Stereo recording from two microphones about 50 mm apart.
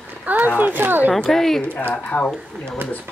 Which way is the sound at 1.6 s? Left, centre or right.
Left.